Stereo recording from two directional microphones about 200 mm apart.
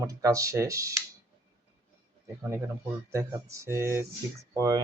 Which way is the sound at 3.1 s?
15° right (ahead or behind).